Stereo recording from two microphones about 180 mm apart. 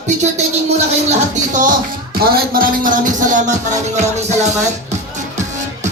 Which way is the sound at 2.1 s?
55° right (ahead or behind).